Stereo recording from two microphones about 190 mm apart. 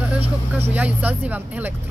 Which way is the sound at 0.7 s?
10° right (ahead or behind).